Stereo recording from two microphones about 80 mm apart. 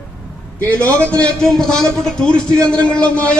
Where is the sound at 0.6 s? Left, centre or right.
Centre.